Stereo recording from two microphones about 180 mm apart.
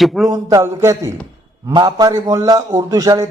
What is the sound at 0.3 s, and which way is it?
A man's voice, 20° right (ahead or behind).